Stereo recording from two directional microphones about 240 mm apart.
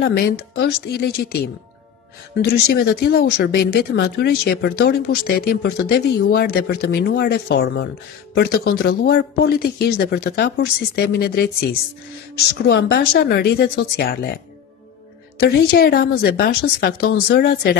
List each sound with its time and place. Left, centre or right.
0.0 s speech: left
2.4 s speech: left
12.6 s speech: left